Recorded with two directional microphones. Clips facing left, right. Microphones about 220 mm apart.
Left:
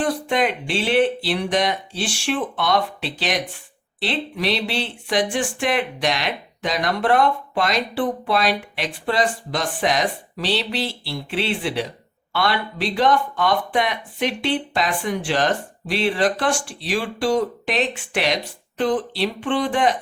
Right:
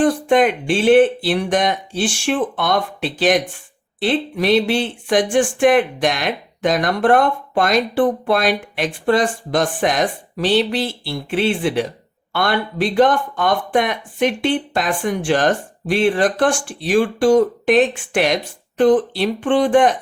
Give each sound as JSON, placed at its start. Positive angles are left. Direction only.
{"t": 0.0, "sound": "speech", "side_deg": -50}